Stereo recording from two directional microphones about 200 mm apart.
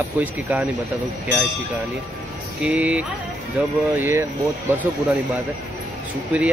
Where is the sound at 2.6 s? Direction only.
5° right (ahead or behind).